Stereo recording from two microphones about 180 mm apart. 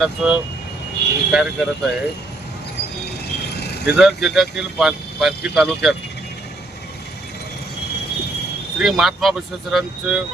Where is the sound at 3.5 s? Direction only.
65° left (ahead or behind).